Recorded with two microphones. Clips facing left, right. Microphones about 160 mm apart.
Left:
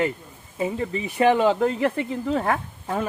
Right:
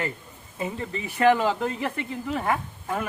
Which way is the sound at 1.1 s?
20° left (ahead or behind).